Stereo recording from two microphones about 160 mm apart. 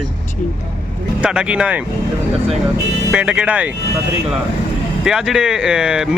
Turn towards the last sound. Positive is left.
turn(degrees=-5)  # may be behind; listen again after turning